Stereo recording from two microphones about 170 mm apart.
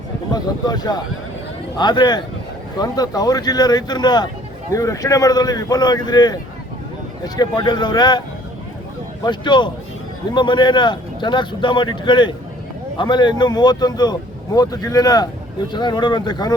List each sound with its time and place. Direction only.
0.3 s speech: 25° left (ahead or behind)
9.2 s speech: 25° left (ahead or behind)